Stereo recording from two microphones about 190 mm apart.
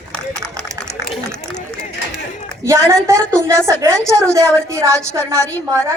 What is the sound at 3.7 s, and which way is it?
A woman's voice, 15° right (ahead or behind).